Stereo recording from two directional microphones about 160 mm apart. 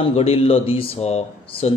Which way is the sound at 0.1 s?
40° left (ahead or behind).